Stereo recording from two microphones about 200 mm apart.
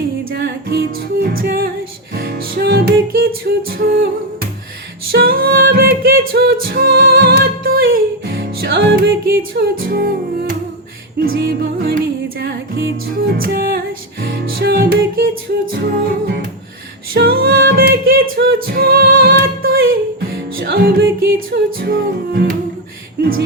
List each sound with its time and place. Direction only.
0.3 s music: 55° right (ahead or behind)
5.1 s music: 50° right (ahead or behind)
11.3 s music: 55° right (ahead or behind)
18.4 s a capella: 55° right (ahead or behind)
18.7 s music: 50° right (ahead or behind)
19.7 s music: 80° right
20.6 s music: 50° right (ahead or behind)